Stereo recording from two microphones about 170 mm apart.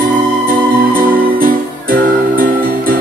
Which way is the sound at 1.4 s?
55° right (ahead or behind).